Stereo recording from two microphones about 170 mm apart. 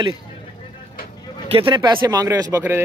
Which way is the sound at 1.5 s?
30° right (ahead or behind).